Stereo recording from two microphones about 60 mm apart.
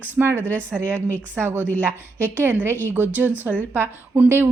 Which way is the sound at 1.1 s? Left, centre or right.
Right.